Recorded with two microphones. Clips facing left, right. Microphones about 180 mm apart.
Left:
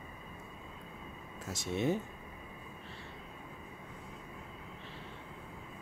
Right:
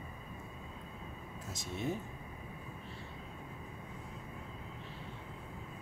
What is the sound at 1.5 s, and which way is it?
Speech, 75° left (ahead or behind).